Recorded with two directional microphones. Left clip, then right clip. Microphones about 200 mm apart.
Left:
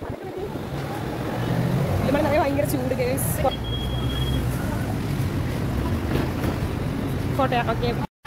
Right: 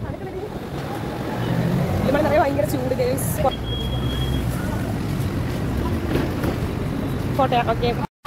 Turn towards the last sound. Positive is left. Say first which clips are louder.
# right 3 dB
turn(degrees=10)  # may be behind; listen again after turning